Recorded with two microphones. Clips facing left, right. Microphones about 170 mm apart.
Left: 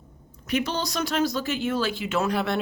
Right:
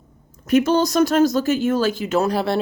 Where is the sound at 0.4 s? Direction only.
45° right (ahead or behind).